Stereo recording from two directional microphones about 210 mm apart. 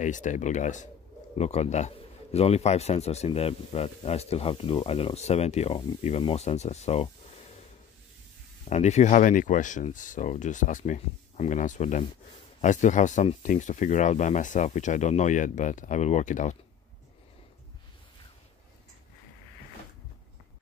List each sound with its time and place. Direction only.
0.0 s a man's voice: 35° left (ahead or behind)
8.6 s a man's voice: 30° left (ahead or behind)